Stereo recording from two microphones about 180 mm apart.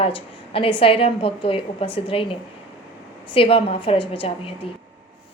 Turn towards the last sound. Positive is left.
turn(degrees=30)  # may be behind; listen again after turning